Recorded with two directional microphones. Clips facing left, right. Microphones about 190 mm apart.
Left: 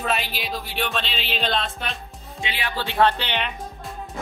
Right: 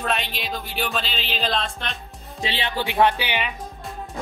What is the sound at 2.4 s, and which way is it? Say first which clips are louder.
Speech: right 3 dB; 30° right (ahead or behind).